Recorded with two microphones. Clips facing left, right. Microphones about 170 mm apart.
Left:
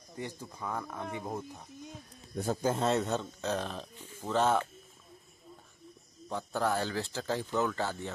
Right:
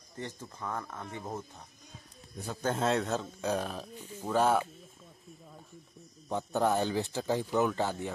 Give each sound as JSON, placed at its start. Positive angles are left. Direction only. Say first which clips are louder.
{"t": 0.2, "sound": "speech", "louder": "even", "side_deg": 10}
{"t": 2.6, "sound": "speech", "louder": "right 1 dB", "side_deg": 0}
{"t": 3.3, "sound": "speech", "louder": "right 2 dB", "side_deg": -10}
{"t": 6.2, "sound": "speech", "louder": "right 3 dB", "side_deg": -20}